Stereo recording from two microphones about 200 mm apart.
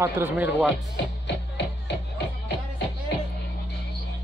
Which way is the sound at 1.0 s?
60° left (ahead or behind).